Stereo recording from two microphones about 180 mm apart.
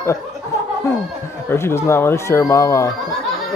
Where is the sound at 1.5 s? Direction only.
15° left (ahead or behind).